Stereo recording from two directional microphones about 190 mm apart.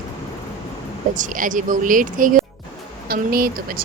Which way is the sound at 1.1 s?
45° right (ahead or behind).